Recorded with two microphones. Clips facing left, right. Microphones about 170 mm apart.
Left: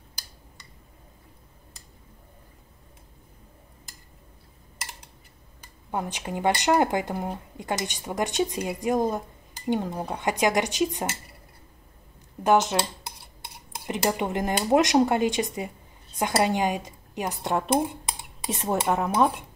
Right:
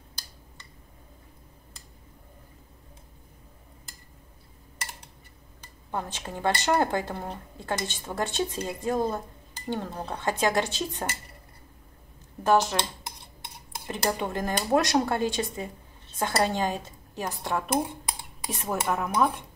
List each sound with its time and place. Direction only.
5.6 s speech: 15° left (ahead or behind)
12.4 s speech: 20° left (ahead or behind)